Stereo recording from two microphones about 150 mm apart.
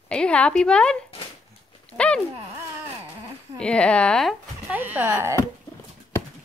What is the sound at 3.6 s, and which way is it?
Speech, 5° left (ahead or behind).